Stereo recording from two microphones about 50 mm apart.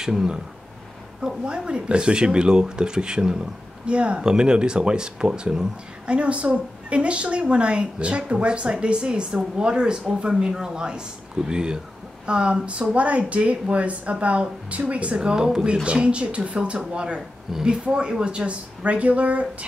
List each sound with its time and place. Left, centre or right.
0.0 s speech: centre; by 19.4 s right